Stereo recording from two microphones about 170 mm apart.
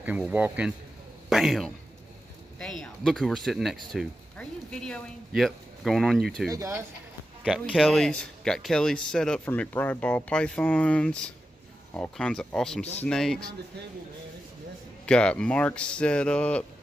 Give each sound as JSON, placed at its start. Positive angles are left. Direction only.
{"t": 0.0, "sound": "speech", "side_deg": -10}
{"t": 6.5, "sound": "speech", "side_deg": -15}
{"t": 7.4, "sound": "speech", "side_deg": 0}
{"t": 15.0, "sound": "speech", "side_deg": 5}